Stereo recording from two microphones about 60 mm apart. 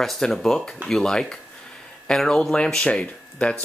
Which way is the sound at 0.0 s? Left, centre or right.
Centre.